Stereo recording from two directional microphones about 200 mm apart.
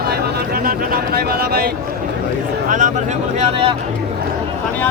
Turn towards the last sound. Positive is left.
turn(degrees=-30)  # may be behind; listen again after turning